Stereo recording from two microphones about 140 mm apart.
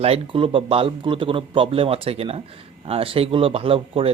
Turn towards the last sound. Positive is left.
turn(degrees=-40)  # may be behind; listen again after turning